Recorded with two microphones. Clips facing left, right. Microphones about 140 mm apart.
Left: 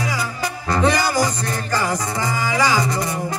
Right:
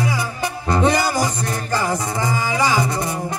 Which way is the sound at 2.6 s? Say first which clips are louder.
Even; 25° right (ahead or behind).